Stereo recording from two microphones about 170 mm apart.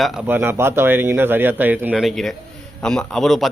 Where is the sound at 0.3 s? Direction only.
10° right (ahead or behind).